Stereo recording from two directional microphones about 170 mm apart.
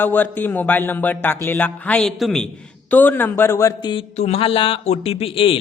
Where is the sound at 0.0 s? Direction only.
10° left (ahead or behind).